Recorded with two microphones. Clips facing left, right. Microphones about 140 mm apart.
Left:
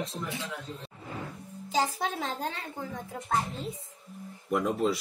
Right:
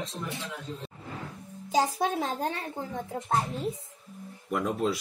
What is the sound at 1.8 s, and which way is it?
Speech, 20° right (ahead or behind).